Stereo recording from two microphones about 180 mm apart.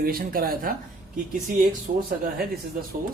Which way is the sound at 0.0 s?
55° right (ahead or behind).